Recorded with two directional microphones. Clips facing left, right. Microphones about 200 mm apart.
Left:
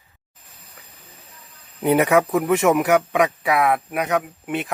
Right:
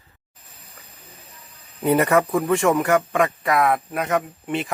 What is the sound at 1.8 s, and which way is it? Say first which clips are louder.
Speech: left 1 dB; centre (ahead or behind).